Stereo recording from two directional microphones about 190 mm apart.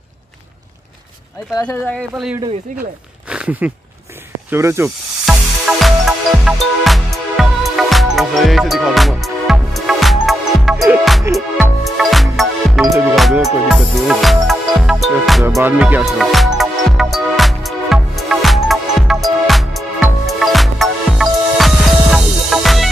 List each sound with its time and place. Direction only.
1.5 s speech: 20° left (ahead or behind)
1.9 s music: centre (ahead or behind)
3.3 s a sound: 5° right (ahead or behind)
4.5 s speech: 15° right (ahead or behind)
5.2 s music: centre (ahead or behind)
11.3 s speech: 15° right (ahead or behind)
11.8 s music: centre (ahead or behind)